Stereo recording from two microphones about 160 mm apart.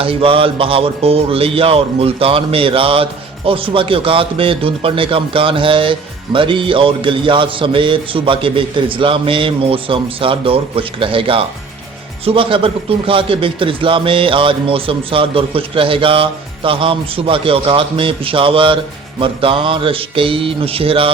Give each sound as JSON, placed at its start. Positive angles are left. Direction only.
{"t": 0.0, "sound": "speech", "side_deg": -35}